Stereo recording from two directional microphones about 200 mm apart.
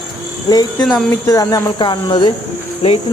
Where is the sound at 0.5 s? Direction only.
20° left (ahead or behind).